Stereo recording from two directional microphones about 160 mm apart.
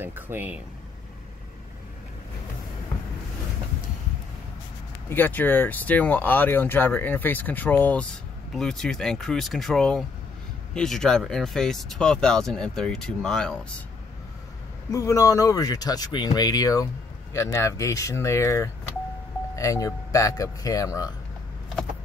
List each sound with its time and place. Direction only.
0.0 s speech: 15° right (ahead or behind)
5.1 s speech: 10° left (ahead or behind)
14.9 s speech: 20° left (ahead or behind)